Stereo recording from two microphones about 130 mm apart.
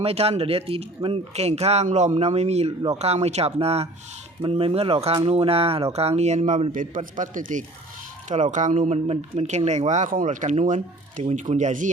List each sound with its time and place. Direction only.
0.0 s speech: 50° right (ahead or behind); by 7.6 s 80° right
8.3 s speech: 70° right (ahead or behind)
9.0 s speech: 55° right (ahead or behind); by 11.9 s 75° right (ahead or behind)